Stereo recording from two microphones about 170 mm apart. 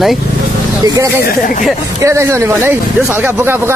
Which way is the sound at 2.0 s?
15° right (ahead or behind).